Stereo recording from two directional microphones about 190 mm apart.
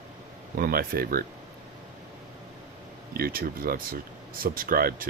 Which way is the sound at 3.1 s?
50° right (ahead or behind).